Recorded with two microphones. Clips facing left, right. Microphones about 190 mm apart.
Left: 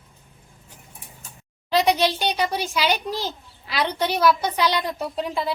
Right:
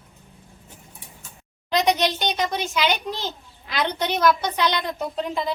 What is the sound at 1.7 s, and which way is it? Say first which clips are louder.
A woman's voice: left 1 dB; 5° left (ahead or behind).